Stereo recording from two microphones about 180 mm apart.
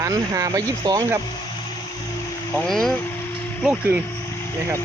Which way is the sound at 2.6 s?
Centre (ahead or behind).